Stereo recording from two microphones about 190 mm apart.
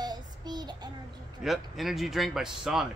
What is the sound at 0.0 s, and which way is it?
Child singing, 20° right (ahead or behind).